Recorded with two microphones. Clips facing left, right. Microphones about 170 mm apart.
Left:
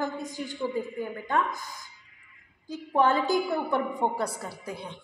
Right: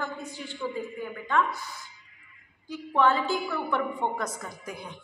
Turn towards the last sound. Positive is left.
turn(degrees=30)  # may be behind; listen again after turning